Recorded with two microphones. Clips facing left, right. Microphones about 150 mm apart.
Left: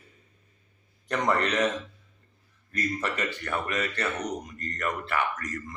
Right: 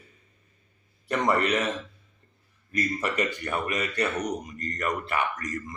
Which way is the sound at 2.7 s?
10° right (ahead or behind).